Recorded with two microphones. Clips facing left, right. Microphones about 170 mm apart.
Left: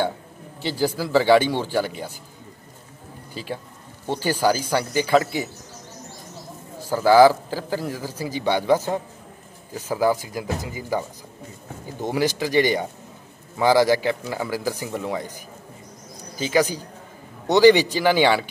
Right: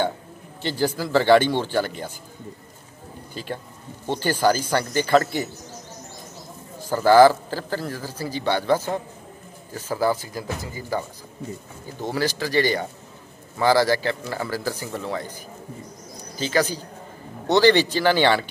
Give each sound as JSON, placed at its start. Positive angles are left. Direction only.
{"t": 0.6, "sound": "a man's voice", "side_deg": 5}
{"t": 3.4, "sound": "a man's voice", "side_deg": 5}
{"t": 6.9, "sound": "a man's voice", "side_deg": 5}
{"t": 16.3, "sound": "a man's voice", "side_deg": 10}